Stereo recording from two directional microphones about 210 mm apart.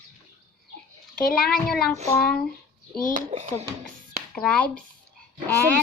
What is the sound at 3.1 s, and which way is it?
A child's voice, 35° right (ahead or behind).